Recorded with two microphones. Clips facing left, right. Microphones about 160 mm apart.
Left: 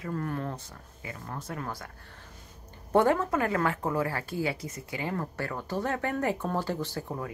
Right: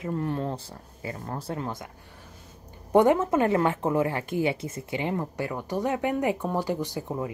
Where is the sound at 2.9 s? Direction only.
20° right (ahead or behind).